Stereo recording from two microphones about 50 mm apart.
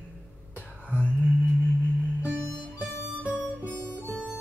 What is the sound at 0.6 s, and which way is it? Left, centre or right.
Whispering, left.